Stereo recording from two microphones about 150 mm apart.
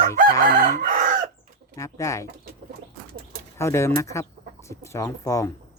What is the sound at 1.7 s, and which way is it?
Speech, 20° left (ahead or behind).